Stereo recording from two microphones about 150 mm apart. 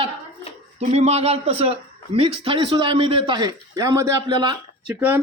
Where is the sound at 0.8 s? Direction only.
45° right (ahead or behind).